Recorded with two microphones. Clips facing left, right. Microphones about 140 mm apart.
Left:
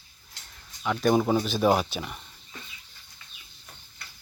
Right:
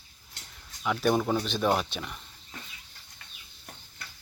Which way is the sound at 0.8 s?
Centre (ahead or behind).